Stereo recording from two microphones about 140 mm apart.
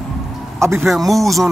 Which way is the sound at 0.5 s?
20° right (ahead or behind).